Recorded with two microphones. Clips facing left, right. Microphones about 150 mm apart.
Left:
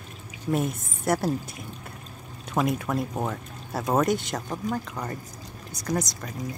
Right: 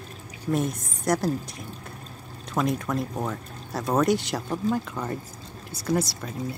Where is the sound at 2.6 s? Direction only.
5° left (ahead or behind).